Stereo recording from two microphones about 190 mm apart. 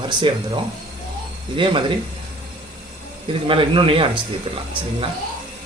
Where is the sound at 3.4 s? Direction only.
25° right (ahead or behind).